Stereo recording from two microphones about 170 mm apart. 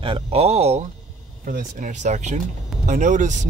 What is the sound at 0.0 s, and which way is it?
Speech, 35° right (ahead or behind).